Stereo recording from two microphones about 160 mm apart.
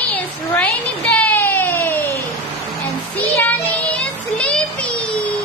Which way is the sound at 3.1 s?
10° left (ahead or behind).